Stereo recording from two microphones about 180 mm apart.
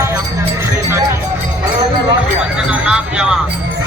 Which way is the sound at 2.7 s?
5° right (ahead or behind).